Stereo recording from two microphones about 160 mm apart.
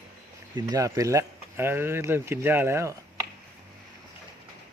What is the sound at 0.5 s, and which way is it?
Speech, 20° right (ahead or behind).